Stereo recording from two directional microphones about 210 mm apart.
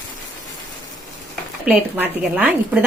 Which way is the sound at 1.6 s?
10° right (ahead or behind).